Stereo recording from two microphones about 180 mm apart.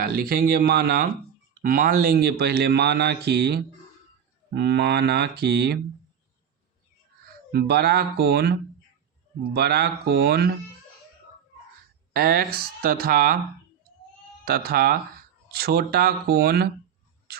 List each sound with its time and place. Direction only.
0.0 s a man's voice: 55° right (ahead or behind)
4.5 s mantra: 70° right (ahead or behind)
7.5 s a man's voice: 60° right (ahead or behind)
12.1 s a man's voice: 60° right (ahead or behind)
14.4 s a man's voice: 55° right (ahead or behind)